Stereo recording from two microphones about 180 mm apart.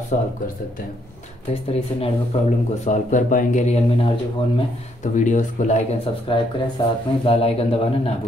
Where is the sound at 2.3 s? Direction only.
35° left (ahead or behind).